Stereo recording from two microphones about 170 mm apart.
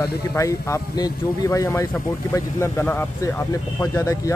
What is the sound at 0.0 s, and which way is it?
Speech, 20° left (ahead or behind).